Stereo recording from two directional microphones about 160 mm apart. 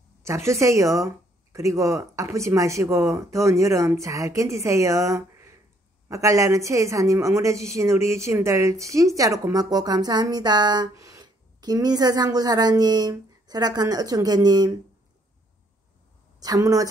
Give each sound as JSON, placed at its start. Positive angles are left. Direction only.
{"t": 0.2, "sound": "a woman's voice", "side_deg": -20}
{"t": 16.3, "sound": "a woman's voice", "side_deg": -20}